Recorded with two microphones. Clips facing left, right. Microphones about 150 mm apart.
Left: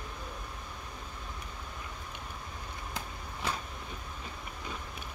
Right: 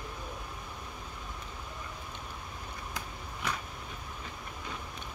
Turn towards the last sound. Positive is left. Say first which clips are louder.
# left 1 dB
turn(degrees=30)  # may be behind; listen again after turning